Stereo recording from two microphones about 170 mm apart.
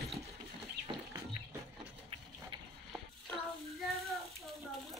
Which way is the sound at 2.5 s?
30° right (ahead or behind).